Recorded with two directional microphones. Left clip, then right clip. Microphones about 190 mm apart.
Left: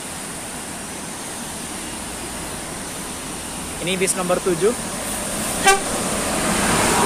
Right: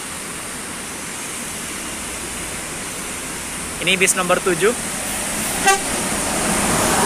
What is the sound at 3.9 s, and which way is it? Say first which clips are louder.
Speech: right 5 dB; 10° left (ahead or behind).